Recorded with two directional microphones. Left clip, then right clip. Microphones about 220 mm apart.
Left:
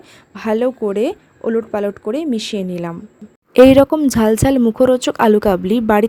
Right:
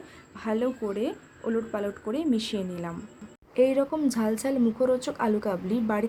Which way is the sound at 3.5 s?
40° left (ahead or behind).